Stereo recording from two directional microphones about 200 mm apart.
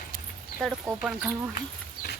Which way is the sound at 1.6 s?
45° left (ahead or behind).